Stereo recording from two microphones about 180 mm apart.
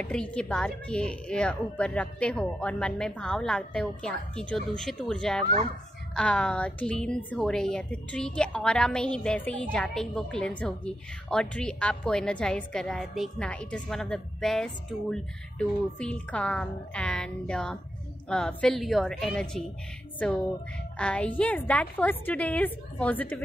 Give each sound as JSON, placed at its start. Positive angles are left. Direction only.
{"t": 0.0, "sound": "a woman's voice", "side_deg": 5}
{"t": 5.4, "sound": "speech", "side_deg": -40}
{"t": 6.1, "sound": "a woman's voice", "side_deg": 5}